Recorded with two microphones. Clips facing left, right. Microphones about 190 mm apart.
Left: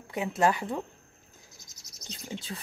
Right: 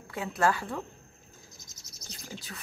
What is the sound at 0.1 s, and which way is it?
Speech, 20° left (ahead or behind).